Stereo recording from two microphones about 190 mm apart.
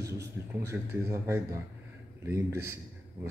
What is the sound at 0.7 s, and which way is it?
Speech, 10° right (ahead or behind).